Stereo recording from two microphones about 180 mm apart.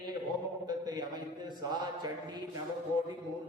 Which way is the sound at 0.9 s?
25° right (ahead or behind).